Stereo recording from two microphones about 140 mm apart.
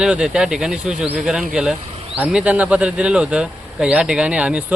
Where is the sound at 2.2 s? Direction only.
10° right (ahead or behind).